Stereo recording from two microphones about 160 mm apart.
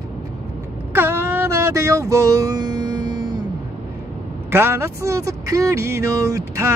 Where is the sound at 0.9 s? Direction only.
15° right (ahead or behind).